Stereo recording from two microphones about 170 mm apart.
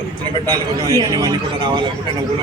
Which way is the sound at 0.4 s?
20° right (ahead or behind).